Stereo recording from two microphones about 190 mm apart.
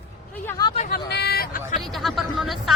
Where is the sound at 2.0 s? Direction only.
Centre (ahead or behind).